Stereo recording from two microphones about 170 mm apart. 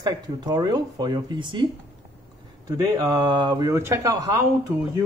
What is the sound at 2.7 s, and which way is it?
Speech, 20° right (ahead or behind).